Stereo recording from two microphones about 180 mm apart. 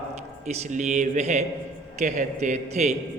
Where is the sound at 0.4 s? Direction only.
40° right (ahead or behind).